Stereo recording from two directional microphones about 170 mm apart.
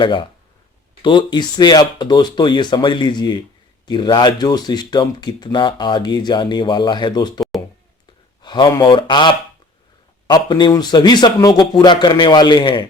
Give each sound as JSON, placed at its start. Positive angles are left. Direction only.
{"t": 0.0, "sound": "speech", "side_deg": 30}